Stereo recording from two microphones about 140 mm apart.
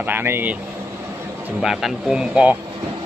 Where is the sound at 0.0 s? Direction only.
15° right (ahead or behind).